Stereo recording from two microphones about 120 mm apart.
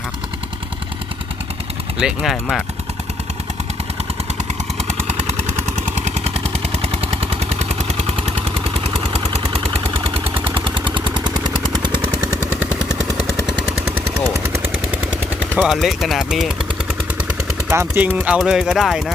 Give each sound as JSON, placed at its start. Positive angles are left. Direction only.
{"t": 2.0, "sound": "speech", "side_deg": -5}
{"t": 6.1, "sound": "vehicle", "side_deg": -65}
{"t": 9.0, "sound": "vehicle", "side_deg": -55}
{"t": 10.4, "sound": "vehicle", "side_deg": -45}
{"t": 12.6, "sound": "gunshot", "side_deg": 20}
{"t": 14.4, "sound": "gunshot", "side_deg": -20}
{"t": 14.8, "sound": "gunshot", "side_deg": -10}
{"t": 15.5, "sound": "speech", "side_deg": -5}
{"t": 17.7, "sound": "speech", "side_deg": -20}
{"t": 18.3, "sound": "speech", "side_deg": -5}